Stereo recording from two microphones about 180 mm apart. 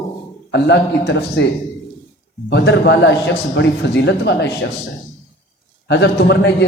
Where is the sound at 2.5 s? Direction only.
75° left (ahead or behind).